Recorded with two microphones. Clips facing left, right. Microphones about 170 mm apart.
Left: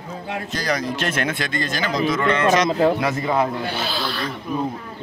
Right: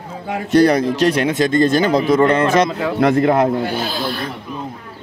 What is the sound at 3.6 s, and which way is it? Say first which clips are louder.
Speech: right 4 dB; 45° right (ahead or behind).